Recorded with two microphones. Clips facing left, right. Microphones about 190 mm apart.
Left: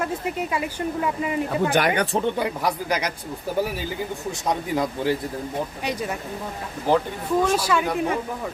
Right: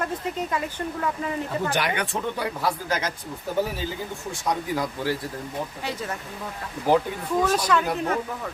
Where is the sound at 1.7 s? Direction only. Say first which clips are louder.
Left 5 dB; 45° left (ahead or behind).